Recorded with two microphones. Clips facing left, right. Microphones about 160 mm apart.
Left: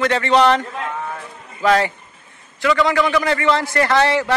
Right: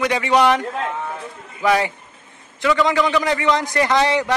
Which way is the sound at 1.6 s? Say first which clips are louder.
Left 2 dB; 15° right (ahead or behind).